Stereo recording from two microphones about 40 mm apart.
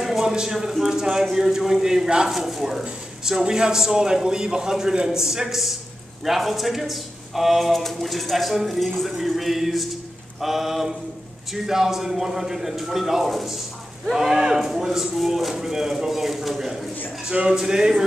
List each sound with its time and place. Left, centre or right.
0.2 s a man's voice: centre